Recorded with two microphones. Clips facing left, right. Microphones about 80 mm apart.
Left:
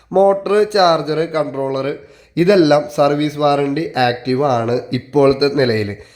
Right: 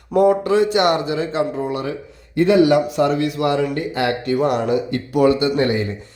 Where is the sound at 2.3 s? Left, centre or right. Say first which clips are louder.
Left 3 dB; left.